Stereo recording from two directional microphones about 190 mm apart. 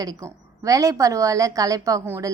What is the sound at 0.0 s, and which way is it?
A woman's voice, 20° right (ahead or behind).